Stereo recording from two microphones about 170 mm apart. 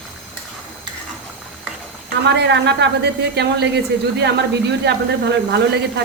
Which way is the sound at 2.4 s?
90° right.